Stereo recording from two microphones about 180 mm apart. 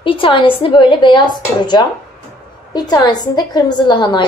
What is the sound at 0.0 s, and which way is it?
A woman's voice, 30° left (ahead or behind).